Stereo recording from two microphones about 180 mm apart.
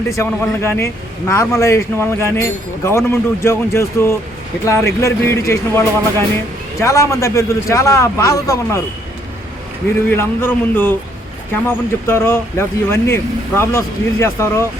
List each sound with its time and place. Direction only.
0.1 s speech: 15° left (ahead or behind)
10.1 s speech: 10° left (ahead or behind)